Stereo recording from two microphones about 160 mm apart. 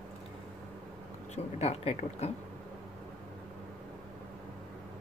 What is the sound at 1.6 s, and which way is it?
Speech, 40° left (ahead or behind).